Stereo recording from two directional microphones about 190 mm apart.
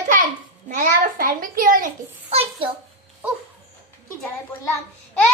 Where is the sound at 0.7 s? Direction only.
50° right (ahead or behind).